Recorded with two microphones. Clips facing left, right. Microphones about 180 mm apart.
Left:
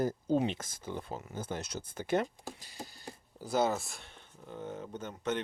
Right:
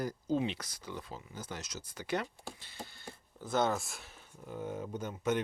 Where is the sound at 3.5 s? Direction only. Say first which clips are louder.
Left 1 dB; 5° left (ahead or behind); by 5.4 s 10° right (ahead or behind).